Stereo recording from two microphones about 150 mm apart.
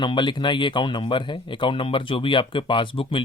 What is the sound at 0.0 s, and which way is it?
Speech, 30° left (ahead or behind).